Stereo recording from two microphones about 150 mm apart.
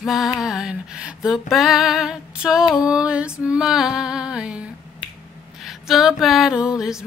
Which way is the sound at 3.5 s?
5° right (ahead or behind).